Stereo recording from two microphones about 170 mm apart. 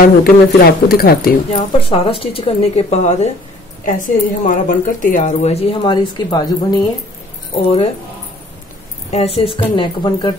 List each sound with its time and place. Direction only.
0.0 s speech: 60° left (ahead or behind)
1.5 s a woman's voice: 30° left (ahead or behind)
7.5 s speech: 35° left (ahead or behind)
9.1 s speech: 40° left (ahead or behind)